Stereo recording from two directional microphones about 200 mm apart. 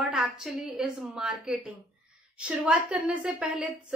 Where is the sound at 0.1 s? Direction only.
5° right (ahead or behind).